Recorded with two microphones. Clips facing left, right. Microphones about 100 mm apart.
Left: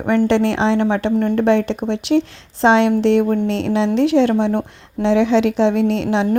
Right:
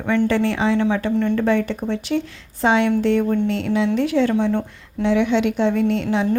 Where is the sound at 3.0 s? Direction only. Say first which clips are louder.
Left 3 dB; 80° left.